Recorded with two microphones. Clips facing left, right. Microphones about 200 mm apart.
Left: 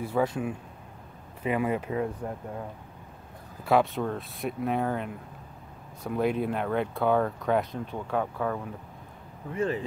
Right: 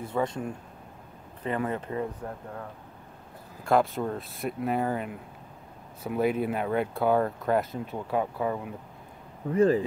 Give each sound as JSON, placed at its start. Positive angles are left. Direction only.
{"t": 0.0, "sound": "speech", "side_deg": 5}
{"t": 3.6, "sound": "speech", "side_deg": 0}
{"t": 9.5, "sound": "speech", "side_deg": -35}